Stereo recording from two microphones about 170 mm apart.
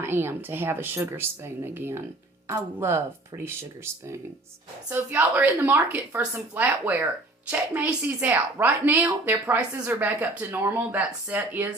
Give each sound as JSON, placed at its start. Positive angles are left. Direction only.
{"t": 0.0, "sound": "a woman's voice", "side_deg": -15}